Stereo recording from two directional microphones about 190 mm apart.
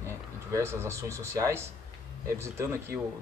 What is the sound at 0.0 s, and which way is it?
Speech, 15° right (ahead or behind).